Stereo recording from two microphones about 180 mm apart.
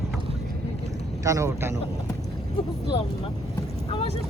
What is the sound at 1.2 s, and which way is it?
Speech, 15° right (ahead or behind).